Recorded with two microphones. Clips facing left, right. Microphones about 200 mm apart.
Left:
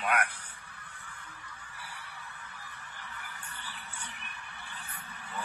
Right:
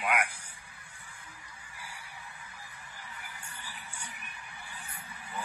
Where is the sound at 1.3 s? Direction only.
15° right (ahead or behind).